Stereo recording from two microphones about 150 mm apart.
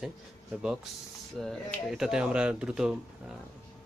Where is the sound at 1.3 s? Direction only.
Centre (ahead or behind).